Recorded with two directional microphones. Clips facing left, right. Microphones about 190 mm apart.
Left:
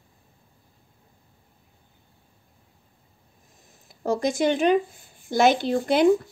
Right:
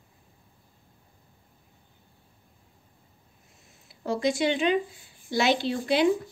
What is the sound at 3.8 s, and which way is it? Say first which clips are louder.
A woman's voice: left 2 dB; 45° left (ahead or behind).